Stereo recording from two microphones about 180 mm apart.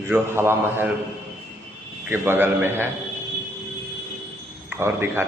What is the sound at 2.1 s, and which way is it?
Speech, 10° right (ahead or behind).